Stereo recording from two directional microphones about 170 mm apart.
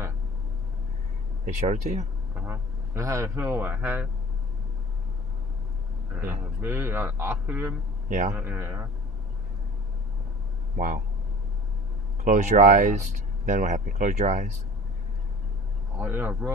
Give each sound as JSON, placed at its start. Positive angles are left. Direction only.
{"t": 1.4, "sound": "speech", "side_deg": -45}
{"t": 2.3, "sound": "a man's voice", "side_deg": -15}
{"t": 6.1, "sound": "a man's voice", "side_deg": -10}
{"t": 12.2, "sound": "speech", "side_deg": -45}
{"t": 16.0, "sound": "a man's voice", "side_deg": -10}